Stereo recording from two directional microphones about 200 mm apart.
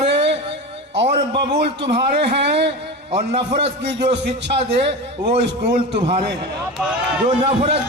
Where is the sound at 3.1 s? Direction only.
30° right (ahead or behind).